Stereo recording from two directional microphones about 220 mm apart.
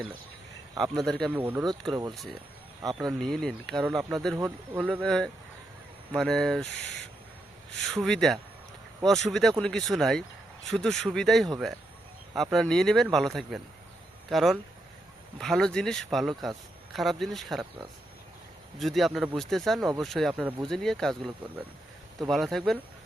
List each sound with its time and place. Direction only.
0.8 s speech: centre (ahead or behind)
1.3 s speech: 10° right (ahead or behind)
1.9 s speech: 20° right (ahead or behind)
3.0 s speech: centre (ahead or behind)
4.4 s speech: 10° right (ahead or behind)
5.0 s speech: 5° left (ahead or behind)
7.9 s speech: centre (ahead or behind)
18.8 s speech: centre (ahead or behind)
22.3 s speech: centre (ahead or behind)